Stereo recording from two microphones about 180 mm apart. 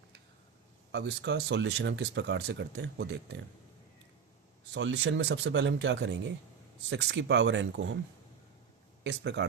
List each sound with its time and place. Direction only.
0.9 s speech: 70° right (ahead or behind)
4.7 s speech: 85° right
9.0 s speech: 80° right